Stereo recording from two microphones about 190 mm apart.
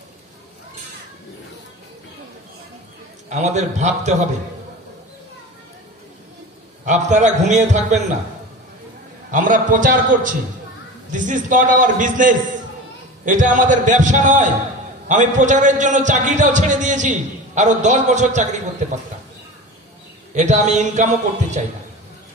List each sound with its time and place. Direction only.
3.3 s a man's voice: 35° right (ahead or behind)
6.9 s a man's voice: 40° right (ahead or behind)
9.3 s a man's voice: 45° right (ahead or behind)
20.3 s a man's voice: 40° right (ahead or behind)